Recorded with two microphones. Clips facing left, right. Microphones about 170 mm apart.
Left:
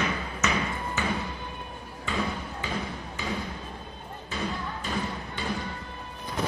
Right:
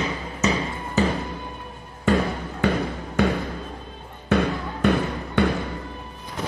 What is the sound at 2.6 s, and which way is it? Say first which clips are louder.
Basketball bounce: right 13 dB; 70° right (ahead or behind).